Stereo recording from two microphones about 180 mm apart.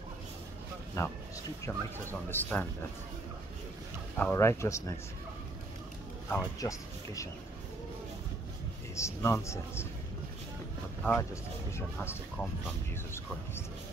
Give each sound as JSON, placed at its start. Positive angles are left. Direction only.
{"t": 1.0, "sound": "a man's voice", "side_deg": 15}
{"t": 4.2, "sound": "a man's voice", "side_deg": 15}
{"t": 6.3, "sound": "a man's voice", "side_deg": 15}
{"t": 8.9, "sound": "a man's voice", "side_deg": 15}
{"t": 11.0, "sound": "a man's voice", "side_deg": 10}